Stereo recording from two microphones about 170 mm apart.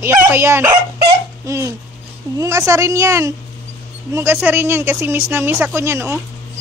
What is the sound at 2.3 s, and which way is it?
Speech, 15° right (ahead or behind).